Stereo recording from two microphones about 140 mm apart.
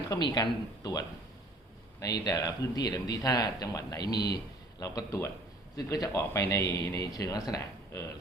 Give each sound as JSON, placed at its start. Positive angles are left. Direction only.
{"t": 0.1, "sound": "a man's voice", "side_deg": 30}